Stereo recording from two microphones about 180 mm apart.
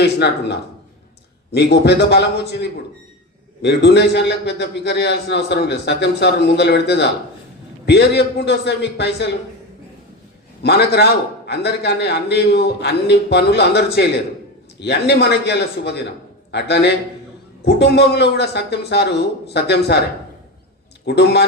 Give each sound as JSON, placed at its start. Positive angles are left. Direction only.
{"t": 0.0, "sound": "a man's voice", "side_deg": 70}
{"t": 1.5, "sound": "a man's voice", "side_deg": 65}
{"t": 10.6, "sound": "a man's voice", "side_deg": 65}
{"t": 21.0, "sound": "a man's voice", "side_deg": 65}